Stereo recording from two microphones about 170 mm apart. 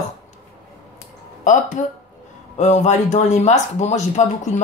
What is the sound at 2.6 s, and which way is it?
Speech, 45° left (ahead or behind).